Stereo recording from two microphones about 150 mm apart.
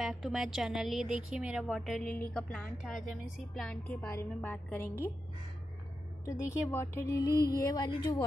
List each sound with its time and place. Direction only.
0.0 s a woman's voice: centre (ahead or behind); by 5.1 s 15° left (ahead or behind)
6.2 s a woman's voice: 20° left (ahead or behind)